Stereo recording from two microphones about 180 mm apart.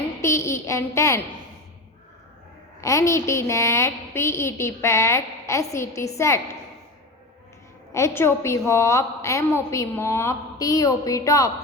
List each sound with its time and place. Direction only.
0.2 s a sound: 15° left (ahead or behind)
2.8 s a woman's voice: 15° left (ahead or behind)
7.9 s a woman's voice: 15° left (ahead or behind)